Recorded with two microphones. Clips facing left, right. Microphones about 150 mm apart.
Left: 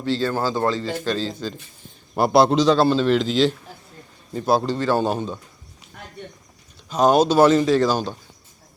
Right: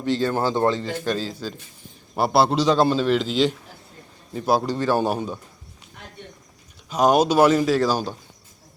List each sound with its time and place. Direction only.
0.0 s a man's voice: 15° right (ahead or behind)
6.9 s speech: 10° right (ahead or behind)